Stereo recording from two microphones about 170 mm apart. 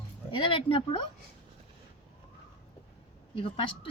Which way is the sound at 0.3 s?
30° left (ahead or behind).